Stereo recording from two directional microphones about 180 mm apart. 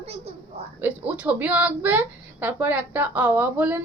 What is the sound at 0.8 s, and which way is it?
Speech, 10° right (ahead or behind).